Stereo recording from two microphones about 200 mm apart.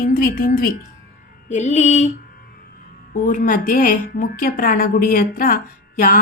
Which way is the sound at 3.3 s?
40° left (ahead or behind).